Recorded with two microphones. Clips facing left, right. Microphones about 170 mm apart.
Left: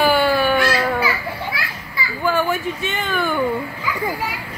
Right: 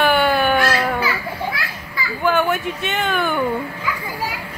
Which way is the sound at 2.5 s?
65° right (ahead or behind).